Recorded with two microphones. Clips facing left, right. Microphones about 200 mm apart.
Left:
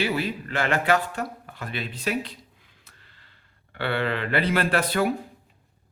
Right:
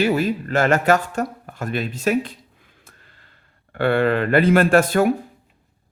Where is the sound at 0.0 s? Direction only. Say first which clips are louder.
Right 7 dB; 45° right (ahead or behind).